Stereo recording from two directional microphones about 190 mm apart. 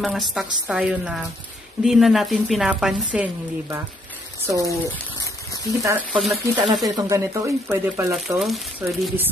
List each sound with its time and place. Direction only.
0.0 s a woman's voice: centre (ahead or behind); by 4.7 s 15° right (ahead or behind)
5.8 s a woman's voice: 15° right (ahead or behind); by 9.1 s centre (ahead or behind)